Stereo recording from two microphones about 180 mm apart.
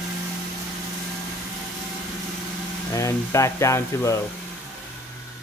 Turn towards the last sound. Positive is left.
turn(degrees=15)  # may be behind; listen again after turning